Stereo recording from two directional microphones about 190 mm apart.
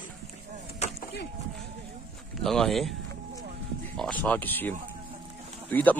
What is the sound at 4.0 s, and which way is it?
Speech, 5° left (ahead or behind).